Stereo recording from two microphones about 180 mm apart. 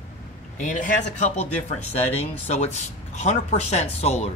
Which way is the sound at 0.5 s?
45° left (ahead or behind).